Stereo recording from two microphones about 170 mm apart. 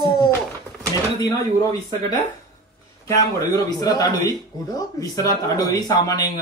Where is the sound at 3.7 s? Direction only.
20° left (ahead or behind).